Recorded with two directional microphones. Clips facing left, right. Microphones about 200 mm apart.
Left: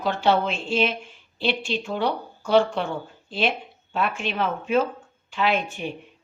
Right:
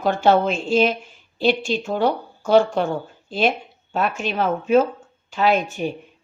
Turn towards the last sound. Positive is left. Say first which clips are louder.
# right 5 dB
turn(degrees=-40)  # may be behind; listen again after turning